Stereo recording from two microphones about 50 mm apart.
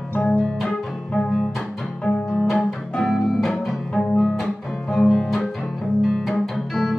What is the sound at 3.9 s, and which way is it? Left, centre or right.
Music, centre.